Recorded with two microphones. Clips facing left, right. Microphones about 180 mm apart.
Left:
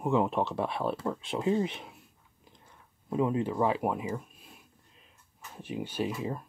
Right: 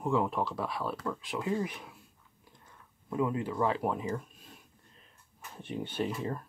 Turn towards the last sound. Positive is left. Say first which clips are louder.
# left 1 dB
turn(degrees=10)  # may be behind; listen again after turning